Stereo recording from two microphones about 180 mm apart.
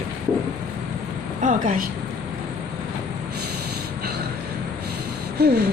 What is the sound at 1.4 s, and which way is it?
Speech, 45° right (ahead or behind).